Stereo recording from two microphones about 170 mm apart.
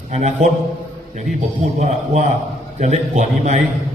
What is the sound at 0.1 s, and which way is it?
Speech, 40° right (ahead or behind).